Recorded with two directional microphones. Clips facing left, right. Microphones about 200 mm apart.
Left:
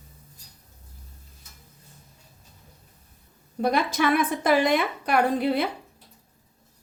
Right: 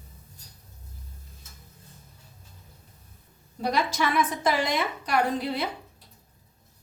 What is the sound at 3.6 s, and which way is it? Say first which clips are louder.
A woman's voice: left 3 dB; 55° left (ahead or behind).